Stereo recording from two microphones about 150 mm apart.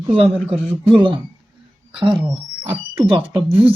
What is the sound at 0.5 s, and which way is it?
Speech, centre (ahead or behind).